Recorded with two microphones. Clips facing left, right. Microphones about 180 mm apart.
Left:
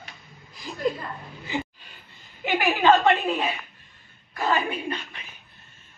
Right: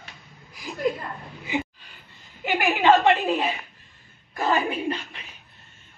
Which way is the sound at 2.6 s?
20° right (ahead or behind).